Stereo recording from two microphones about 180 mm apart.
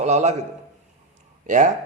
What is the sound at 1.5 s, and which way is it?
Speech, 45° right (ahead or behind).